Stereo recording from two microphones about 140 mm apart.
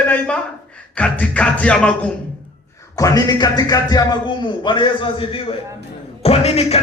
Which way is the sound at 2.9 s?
25° left (ahead or behind).